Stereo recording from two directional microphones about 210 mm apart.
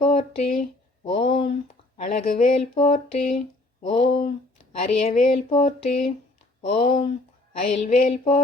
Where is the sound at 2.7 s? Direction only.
25° left (ahead or behind).